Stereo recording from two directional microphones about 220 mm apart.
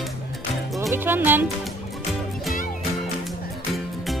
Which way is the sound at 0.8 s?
10° right (ahead or behind).